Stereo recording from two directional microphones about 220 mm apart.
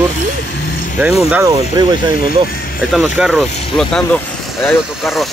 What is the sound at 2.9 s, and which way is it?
Speech, 5° right (ahead or behind).